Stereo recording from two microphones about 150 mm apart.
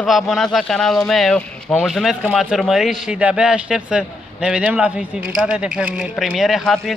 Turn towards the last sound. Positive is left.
turn(degrees=0)  # may be behind; listen again after turning